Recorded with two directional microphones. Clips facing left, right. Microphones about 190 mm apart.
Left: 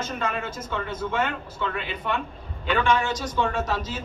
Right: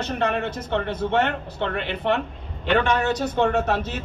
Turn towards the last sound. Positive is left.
turn(degrees=-70)  # may be behind; listen again after turning